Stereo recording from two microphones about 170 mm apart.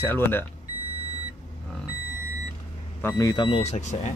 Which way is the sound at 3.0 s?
20° left (ahead or behind).